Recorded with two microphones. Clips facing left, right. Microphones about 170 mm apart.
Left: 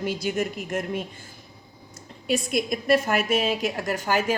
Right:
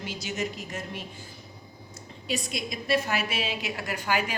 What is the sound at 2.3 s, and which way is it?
A woman's voice, 55° left (ahead or behind).